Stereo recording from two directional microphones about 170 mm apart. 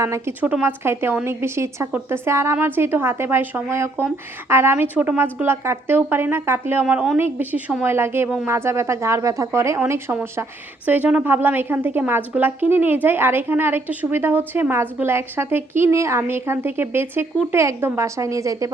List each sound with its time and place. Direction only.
0.0 s a woman's voice: 15° right (ahead or behind)